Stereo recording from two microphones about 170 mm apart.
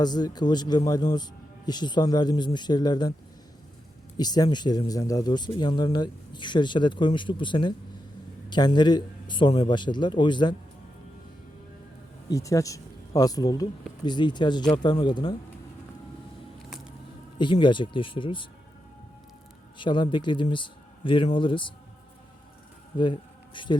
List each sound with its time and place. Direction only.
0.0 s speech: 25° left (ahead or behind)
4.2 s speech: 25° left (ahead or behind)
12.3 s speech: 20° left (ahead or behind)
17.3 s speech: 30° left (ahead or behind)
19.8 s speech: 30° left (ahead or behind)
22.9 s speech: 25° left (ahead or behind)